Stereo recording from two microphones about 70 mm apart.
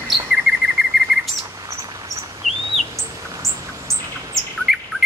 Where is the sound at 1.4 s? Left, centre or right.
Right.